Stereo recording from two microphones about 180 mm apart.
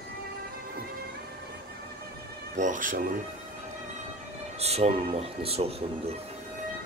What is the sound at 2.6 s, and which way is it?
Speech, 45° right (ahead or behind).